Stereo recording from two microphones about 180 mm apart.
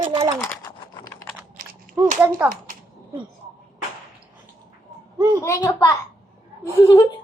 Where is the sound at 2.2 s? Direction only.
5° right (ahead or behind).